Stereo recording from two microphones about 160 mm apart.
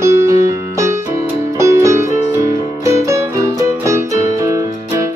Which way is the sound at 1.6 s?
20° right (ahead or behind).